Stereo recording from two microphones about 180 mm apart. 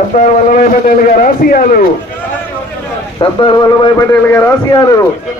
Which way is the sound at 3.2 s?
25° left (ahead or behind).